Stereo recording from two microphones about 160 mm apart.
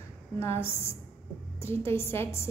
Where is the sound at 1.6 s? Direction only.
15° left (ahead or behind).